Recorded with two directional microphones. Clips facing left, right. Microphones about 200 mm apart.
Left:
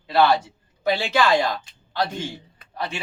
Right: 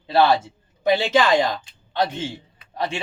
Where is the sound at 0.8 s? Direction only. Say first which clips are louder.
Right 3 dB; 20° right (ahead or behind).